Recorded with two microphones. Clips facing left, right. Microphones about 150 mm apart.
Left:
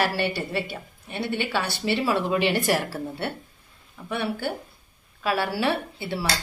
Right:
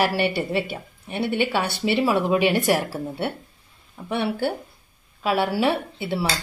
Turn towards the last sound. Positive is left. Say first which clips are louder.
# right 4 dB
turn(degrees=-20)  # may be behind; listen again after turning